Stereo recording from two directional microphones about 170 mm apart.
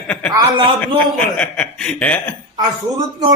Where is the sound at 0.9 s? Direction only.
5° left (ahead or behind).